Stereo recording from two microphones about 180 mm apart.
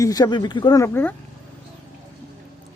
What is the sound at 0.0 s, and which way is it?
Speech, 20° left (ahead or behind).